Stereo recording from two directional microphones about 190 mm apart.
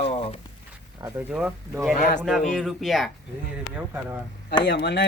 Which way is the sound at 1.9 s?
50° left (ahead or behind).